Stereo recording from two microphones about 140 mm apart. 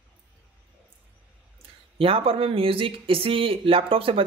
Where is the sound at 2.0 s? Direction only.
40° right (ahead or behind).